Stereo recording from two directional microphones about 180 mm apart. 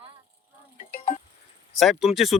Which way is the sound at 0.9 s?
45° left (ahead or behind).